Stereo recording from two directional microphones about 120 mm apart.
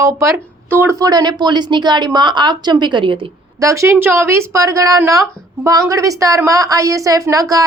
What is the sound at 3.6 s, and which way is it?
A woman's voice, 25° right (ahead or behind).